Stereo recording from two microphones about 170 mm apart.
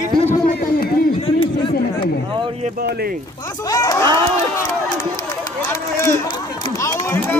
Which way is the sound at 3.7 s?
20° left (ahead or behind).